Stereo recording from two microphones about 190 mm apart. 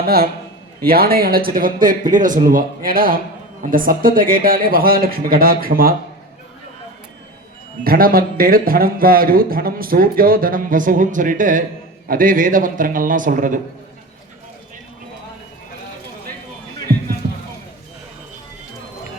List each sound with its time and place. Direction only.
0.0 s a man's voice: 55° right (ahead or behind)
7.9 s speech: 50° right (ahead or behind)